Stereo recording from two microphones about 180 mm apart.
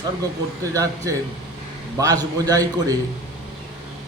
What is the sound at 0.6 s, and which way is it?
A man's voice, 20° right (ahead or behind).